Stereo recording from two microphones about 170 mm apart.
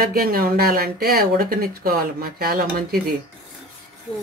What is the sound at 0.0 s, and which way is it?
Speech, 60° right (ahead or behind).